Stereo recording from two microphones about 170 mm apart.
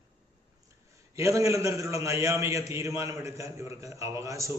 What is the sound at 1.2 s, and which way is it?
A man's voice, 15° right (ahead or behind).